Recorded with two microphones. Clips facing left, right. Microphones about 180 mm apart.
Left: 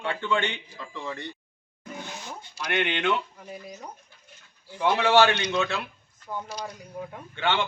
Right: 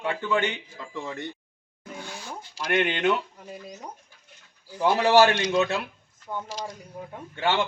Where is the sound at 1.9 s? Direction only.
20° left (ahead or behind).